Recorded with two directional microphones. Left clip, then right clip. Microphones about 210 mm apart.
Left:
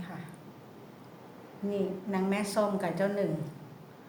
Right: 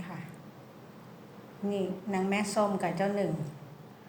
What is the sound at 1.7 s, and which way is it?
A woman's voice, centre (ahead or behind).